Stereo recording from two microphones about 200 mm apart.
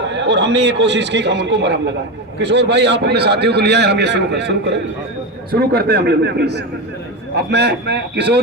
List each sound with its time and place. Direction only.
0.1 s a man's voice: 60° right (ahead or behind)